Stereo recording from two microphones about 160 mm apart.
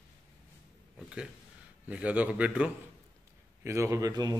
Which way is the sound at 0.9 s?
5° right (ahead or behind).